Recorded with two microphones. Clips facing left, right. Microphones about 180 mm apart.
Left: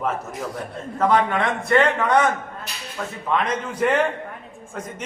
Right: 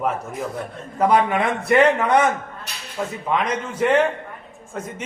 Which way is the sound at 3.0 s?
15° right (ahead or behind).